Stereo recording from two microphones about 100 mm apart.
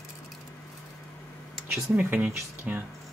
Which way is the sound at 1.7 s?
10° right (ahead or behind).